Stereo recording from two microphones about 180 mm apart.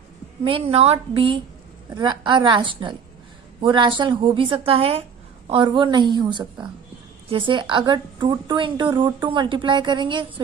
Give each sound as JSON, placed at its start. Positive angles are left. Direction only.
{"t": 0.4, "sound": "a woman's voice", "side_deg": -30}